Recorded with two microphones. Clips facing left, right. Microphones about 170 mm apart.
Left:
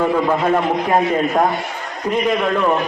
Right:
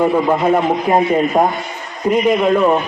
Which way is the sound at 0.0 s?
15° right (ahead or behind).